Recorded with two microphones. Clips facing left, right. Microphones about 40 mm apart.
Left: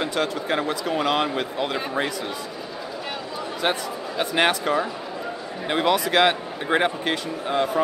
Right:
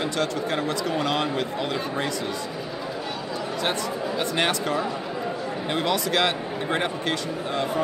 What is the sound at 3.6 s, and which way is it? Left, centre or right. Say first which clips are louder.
Speech: left 2 dB; centre.